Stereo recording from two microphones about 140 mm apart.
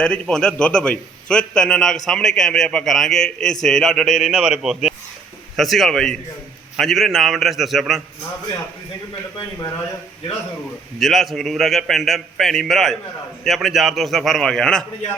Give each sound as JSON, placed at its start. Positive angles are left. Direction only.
{"t": 0.0, "sound": "a man's voice", "side_deg": 5}
{"t": 11.0, "sound": "a man's voice", "side_deg": 0}